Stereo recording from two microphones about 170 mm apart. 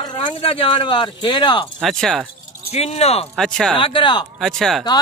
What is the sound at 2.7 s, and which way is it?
Speech, 40° left (ahead or behind).